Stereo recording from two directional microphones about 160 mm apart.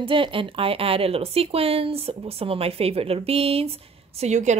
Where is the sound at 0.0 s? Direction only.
35° right (ahead or behind).